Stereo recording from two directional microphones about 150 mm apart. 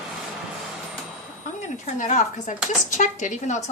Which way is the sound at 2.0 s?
55° left (ahead or behind).